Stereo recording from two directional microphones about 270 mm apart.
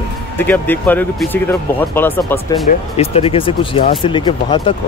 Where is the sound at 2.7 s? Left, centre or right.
Left.